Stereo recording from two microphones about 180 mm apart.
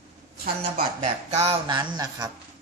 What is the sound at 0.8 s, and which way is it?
Speech, 35° right (ahead or behind).